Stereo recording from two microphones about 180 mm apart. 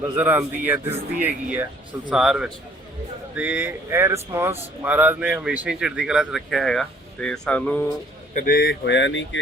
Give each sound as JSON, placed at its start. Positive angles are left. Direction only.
{"t": 0.2, "sound": "speech", "side_deg": -10}
{"t": 8.3, "sound": "speech", "side_deg": 50}